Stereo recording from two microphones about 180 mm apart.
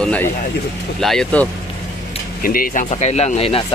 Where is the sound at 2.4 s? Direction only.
50° left (ahead or behind); by 3.6 s 30° left (ahead or behind).